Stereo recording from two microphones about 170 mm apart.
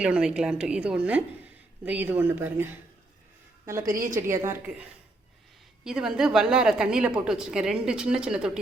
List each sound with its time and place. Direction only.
0.0 s a woman's voice: 5° right (ahead or behind)